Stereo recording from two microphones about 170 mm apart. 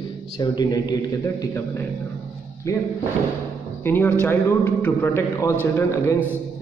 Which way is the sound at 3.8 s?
10° left (ahead or behind).